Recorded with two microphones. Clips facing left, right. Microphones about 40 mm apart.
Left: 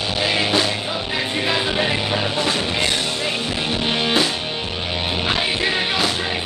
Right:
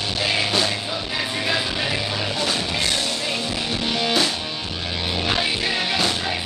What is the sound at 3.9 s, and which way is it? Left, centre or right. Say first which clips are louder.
Music: left 2 dB; left.